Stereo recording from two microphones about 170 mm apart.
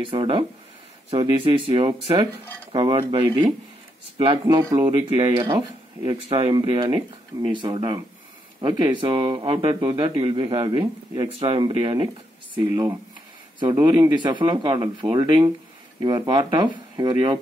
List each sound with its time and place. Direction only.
0.0 s speech: 30° right (ahead or behind)
13.6 s speech: 25° right (ahead or behind)